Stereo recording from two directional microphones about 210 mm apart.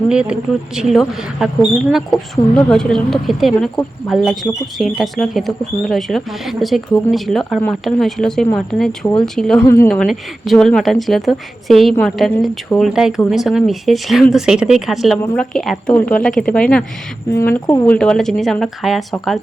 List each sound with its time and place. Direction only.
0.1 s a woman's voice: 5° right (ahead or behind)
9.6 s speech: 15° left (ahead or behind)
9.9 s a woman's voice: centre (ahead or behind)